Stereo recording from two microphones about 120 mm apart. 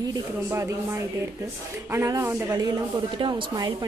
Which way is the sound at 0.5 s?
20° right (ahead or behind).